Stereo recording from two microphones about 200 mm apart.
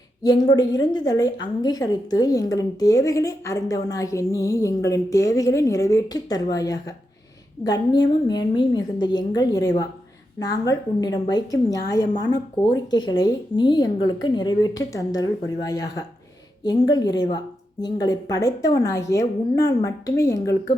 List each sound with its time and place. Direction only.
0.2 s a woman's voice: 20° left (ahead or behind)